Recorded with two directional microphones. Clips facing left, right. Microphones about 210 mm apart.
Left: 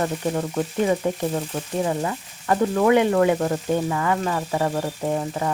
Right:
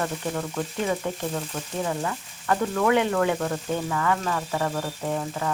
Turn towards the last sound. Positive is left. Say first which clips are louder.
# left 4 dB
turn(degrees=25)  # may be behind; listen again after turning